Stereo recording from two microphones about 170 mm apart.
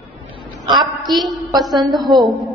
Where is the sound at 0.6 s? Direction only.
25° right (ahead or behind).